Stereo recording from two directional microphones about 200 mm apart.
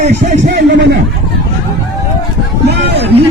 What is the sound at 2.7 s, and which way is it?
Speech, 55° right (ahead or behind).